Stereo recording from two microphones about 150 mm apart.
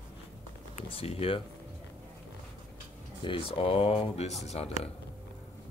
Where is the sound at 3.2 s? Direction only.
35° left (ahead or behind).